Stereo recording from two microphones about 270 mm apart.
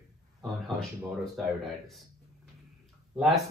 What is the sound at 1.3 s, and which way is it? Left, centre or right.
Speech, centre.